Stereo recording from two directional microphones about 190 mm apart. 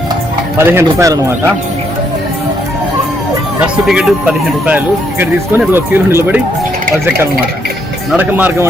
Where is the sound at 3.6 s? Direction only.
5° right (ahead or behind).